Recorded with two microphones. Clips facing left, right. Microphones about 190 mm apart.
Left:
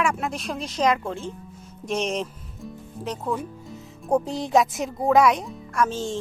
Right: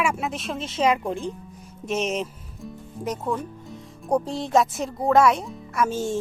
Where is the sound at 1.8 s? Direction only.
5° right (ahead or behind).